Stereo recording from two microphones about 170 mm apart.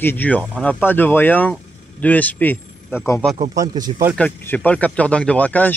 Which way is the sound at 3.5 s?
25° right (ahead or behind).